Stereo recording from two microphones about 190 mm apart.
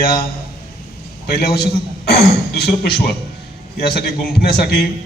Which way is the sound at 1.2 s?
55° left (ahead or behind).